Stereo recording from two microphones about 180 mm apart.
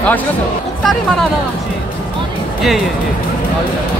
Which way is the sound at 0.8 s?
Centre (ahead or behind).